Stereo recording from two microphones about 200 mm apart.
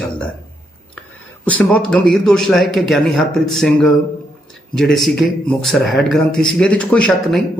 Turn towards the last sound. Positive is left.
turn(degrees=5)  # may be behind; listen again after turning